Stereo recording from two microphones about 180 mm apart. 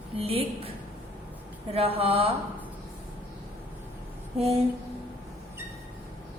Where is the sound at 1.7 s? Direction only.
35° right (ahead or behind).